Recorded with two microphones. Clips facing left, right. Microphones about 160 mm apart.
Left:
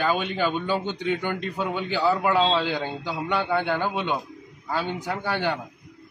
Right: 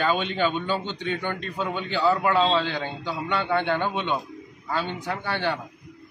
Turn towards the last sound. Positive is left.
turn(degrees=15)  # may be behind; listen again after turning